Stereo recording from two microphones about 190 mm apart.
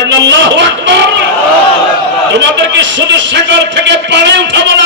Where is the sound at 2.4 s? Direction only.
70° right (ahead or behind).